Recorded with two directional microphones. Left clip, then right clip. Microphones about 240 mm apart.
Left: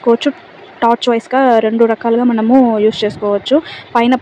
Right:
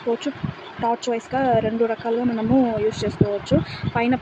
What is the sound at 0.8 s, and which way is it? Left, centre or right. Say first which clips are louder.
Speech: left 11 dB; left.